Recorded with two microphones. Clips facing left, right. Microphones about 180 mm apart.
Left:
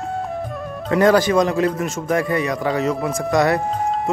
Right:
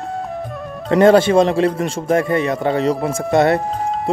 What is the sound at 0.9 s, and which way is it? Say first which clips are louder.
Speech: right 4 dB; 25° right (ahead or behind).